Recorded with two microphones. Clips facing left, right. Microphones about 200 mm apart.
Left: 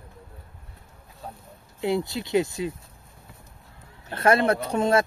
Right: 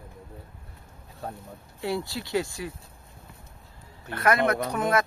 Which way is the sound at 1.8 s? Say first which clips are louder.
Left 4 dB; 20° left (ahead or behind).